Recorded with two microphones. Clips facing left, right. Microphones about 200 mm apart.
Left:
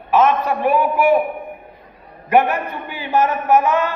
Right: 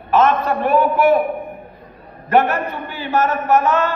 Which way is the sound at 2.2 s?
15° left (ahead or behind).